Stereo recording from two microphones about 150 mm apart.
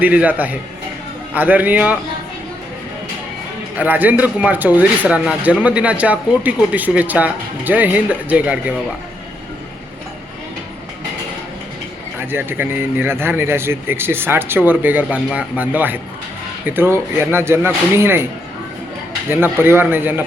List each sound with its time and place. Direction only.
0.0 s speech: 10° right (ahead or behind)
3.8 s speech: 10° right (ahead or behind)
12.3 s speech: 15° right (ahead or behind)
19.3 s speech: 15° right (ahead or behind)